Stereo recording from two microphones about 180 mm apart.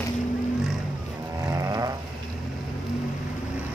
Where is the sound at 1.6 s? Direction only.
20° right (ahead or behind).